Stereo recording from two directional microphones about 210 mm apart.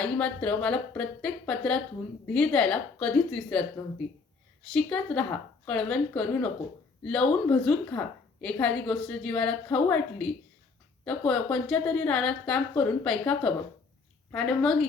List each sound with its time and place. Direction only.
0.0 s a woman's voice: 5° left (ahead or behind)
4.7 s a woman's voice: 5° left (ahead or behind)